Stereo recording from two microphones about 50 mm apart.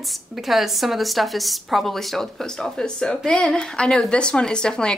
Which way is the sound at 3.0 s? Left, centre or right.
Centre.